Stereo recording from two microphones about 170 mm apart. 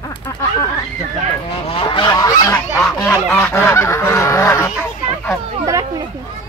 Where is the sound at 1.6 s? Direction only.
30° left (ahead or behind).